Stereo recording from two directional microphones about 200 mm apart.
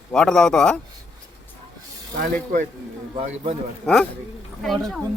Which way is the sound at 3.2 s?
30° right (ahead or behind).